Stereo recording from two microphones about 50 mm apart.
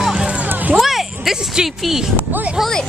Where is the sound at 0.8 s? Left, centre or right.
Centre.